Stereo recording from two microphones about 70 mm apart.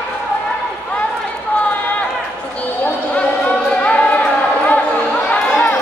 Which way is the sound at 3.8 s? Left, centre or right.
Centre.